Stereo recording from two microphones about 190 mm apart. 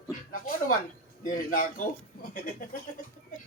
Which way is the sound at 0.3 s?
45° left (ahead or behind).